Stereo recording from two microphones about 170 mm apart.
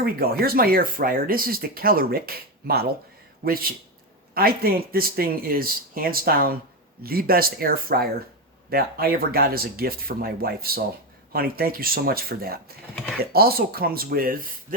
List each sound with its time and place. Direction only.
0.0 s speech: 65° right (ahead or behind)